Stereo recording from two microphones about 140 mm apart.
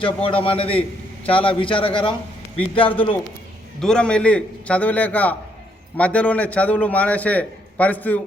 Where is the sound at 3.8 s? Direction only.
5° left (ahead or behind).